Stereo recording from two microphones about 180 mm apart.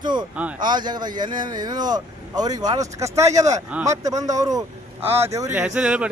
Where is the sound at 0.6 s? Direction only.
25° right (ahead or behind).